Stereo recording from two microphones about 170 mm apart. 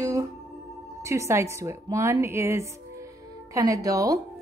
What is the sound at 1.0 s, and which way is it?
A woman's voice, 15° right (ahead or behind).